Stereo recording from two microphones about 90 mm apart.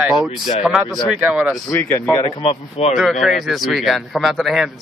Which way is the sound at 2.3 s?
90° left.